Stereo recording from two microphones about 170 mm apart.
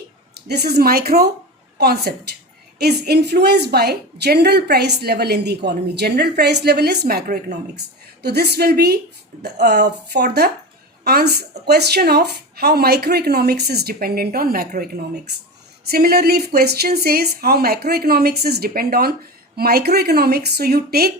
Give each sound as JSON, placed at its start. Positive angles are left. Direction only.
{"t": 0.3, "sound": "a woman's voice", "side_deg": -70}